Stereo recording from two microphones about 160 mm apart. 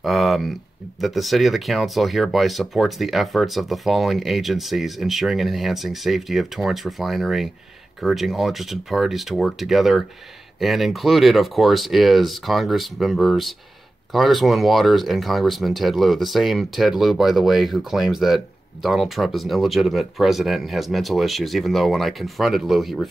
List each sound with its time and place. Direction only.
0.0 s speech: centre (ahead or behind)